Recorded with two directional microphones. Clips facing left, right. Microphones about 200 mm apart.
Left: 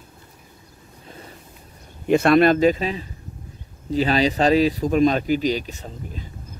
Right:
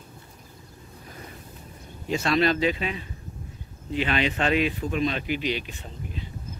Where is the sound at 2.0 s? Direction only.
55° left (ahead or behind); by 6.2 s 40° left (ahead or behind).